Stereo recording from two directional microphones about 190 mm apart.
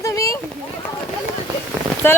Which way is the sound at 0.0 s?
15° left (ahead or behind).